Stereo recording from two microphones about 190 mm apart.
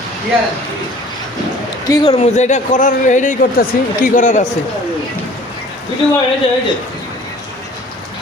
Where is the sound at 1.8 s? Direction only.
20° left (ahead or behind); by 4.5 s 40° left (ahead or behind).